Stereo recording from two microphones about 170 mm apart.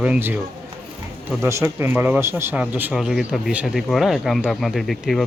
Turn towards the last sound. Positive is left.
turn(degrees=0)  # may be behind; listen again after turning